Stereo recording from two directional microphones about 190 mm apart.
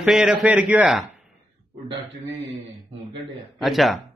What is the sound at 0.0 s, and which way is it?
Speech, 5° right (ahead or behind).